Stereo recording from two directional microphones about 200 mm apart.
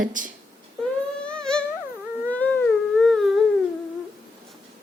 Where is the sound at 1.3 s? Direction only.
5° left (ahead or behind).